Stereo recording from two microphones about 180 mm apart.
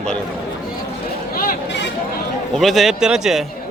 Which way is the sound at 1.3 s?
55° left (ahead or behind).